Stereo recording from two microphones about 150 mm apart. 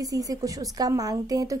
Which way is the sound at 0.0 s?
25° right (ahead or behind).